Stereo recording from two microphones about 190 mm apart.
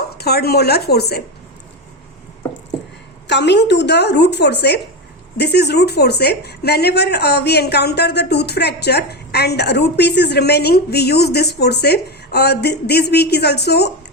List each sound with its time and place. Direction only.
0.2 s a woman's voice: 55° left (ahead or behind)
3.2 s a woman's voice: 65° left (ahead or behind)